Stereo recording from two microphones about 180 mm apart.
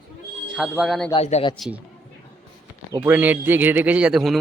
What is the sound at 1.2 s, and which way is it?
Speech, 35° left (ahead or behind).